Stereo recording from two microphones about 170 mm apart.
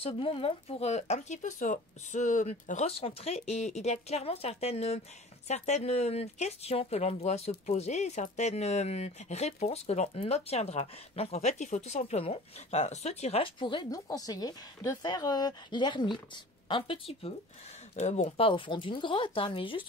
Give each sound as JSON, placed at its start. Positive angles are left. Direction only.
{"t": 0.0, "sound": "speech", "side_deg": 35}
{"t": 18.5, "sound": "speech", "side_deg": 30}